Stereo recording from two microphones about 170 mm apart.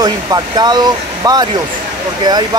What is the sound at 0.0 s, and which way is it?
Speech, 25° right (ahead or behind).